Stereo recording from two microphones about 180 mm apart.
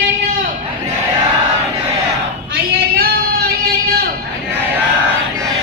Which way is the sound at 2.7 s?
55° right (ahead or behind).